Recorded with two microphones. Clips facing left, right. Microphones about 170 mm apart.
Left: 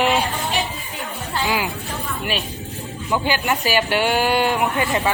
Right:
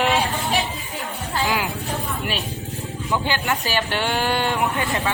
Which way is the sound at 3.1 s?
5° left (ahead or behind).